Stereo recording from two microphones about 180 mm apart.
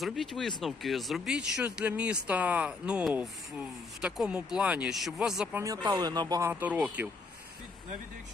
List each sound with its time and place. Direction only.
0.0 s speech: centre (ahead or behind)
5.6 s speech: 20° right (ahead or behind)
6.5 s speech: 10° right (ahead or behind)